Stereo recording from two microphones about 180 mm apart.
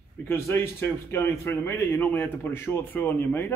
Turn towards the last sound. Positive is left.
turn(degrees=10)  # may be behind; listen again after turning